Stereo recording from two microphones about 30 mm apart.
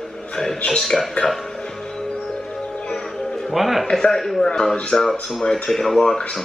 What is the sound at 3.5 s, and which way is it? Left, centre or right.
Speech, centre.